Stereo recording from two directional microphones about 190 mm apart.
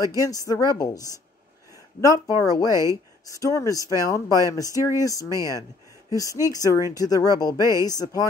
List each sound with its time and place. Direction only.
0.0 s speech: 20° left (ahead or behind)